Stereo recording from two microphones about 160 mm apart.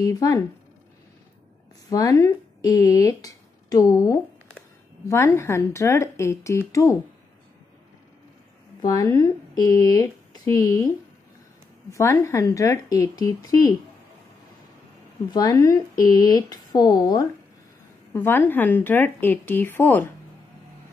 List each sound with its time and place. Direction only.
0.0 s speech: 20° left (ahead or behind)
1.9 s a woman's voice: 20° left (ahead or behind)
8.8 s speech: 20° left (ahead or behind)
11.9 s speech: 15° left (ahead or behind)
15.3 s speech: 20° left (ahead or behind)
18.1 s a woman's voice: 15° left (ahead or behind)